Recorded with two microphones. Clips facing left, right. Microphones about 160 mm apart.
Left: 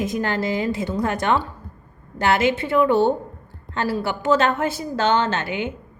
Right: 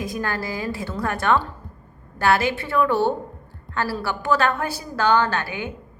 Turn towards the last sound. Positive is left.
turn(degrees=20)  # may be behind; listen again after turning